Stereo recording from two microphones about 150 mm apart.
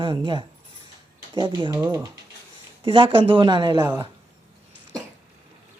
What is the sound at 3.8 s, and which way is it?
Speech, 15° right (ahead or behind).